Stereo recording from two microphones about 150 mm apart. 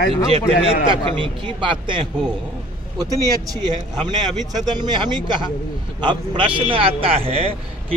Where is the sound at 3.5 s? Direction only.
30° right (ahead or behind).